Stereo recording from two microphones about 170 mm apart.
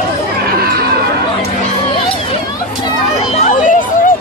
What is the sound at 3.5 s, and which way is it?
Chatter, 50° left (ahead or behind).